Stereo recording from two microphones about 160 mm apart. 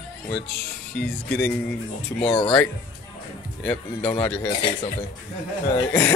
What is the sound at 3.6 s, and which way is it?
Chuckle, 10° left (ahead or behind).